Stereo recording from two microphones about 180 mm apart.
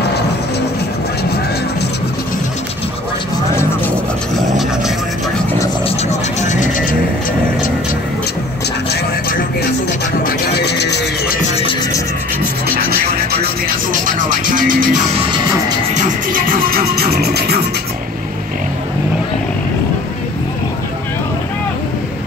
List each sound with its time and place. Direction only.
5.9 s vehicle: 40° left (ahead or behind)
10.2 s music: 60° left (ahead or behind)
12.6 s music: 55° right (ahead or behind)
14.0 s music: 50° right (ahead or behind)